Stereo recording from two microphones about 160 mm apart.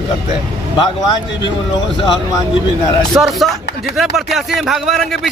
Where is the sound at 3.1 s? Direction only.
Centre (ahead or behind).